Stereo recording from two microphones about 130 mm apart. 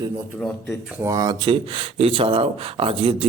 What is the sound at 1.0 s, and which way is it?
Speech, 25° right (ahead or behind).